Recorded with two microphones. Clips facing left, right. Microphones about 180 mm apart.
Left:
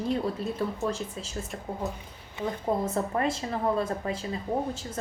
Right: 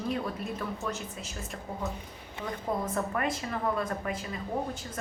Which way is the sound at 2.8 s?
30° left (ahead or behind).